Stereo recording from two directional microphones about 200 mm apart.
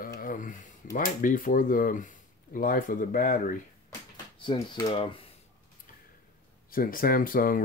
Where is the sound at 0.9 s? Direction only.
40° left (ahead or behind).